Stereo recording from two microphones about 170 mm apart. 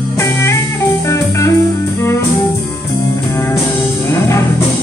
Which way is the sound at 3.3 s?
15° left (ahead or behind).